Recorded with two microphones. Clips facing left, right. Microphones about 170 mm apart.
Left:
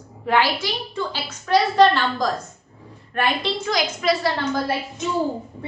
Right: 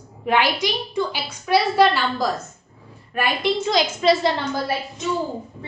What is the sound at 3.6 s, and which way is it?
Speech, 25° right (ahead or behind).